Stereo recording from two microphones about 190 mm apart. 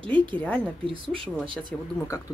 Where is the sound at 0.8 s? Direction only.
30° right (ahead or behind).